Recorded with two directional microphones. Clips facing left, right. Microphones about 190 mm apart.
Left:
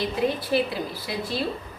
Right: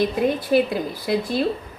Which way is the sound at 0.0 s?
50° right (ahead or behind).